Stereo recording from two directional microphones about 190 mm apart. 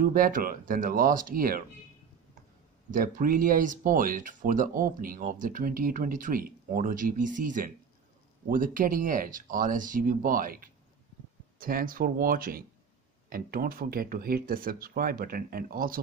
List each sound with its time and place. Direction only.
0.0 s speech: 50° right (ahead or behind)
2.9 s speech: 45° right (ahead or behind)